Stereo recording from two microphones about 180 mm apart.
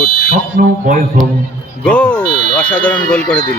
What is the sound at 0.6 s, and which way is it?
Speech, 50° right (ahead or behind).